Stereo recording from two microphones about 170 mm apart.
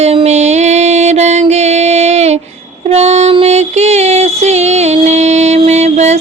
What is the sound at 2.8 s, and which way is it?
Music, 40° right (ahead or behind).